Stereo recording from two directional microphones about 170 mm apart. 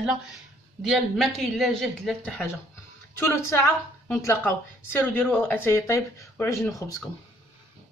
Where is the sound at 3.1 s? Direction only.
15° left (ahead or behind).